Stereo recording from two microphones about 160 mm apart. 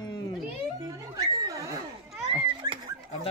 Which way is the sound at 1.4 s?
20° right (ahead or behind).